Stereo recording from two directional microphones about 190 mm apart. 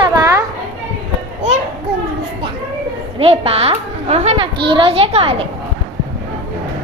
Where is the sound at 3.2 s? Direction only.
30° right (ahead or behind).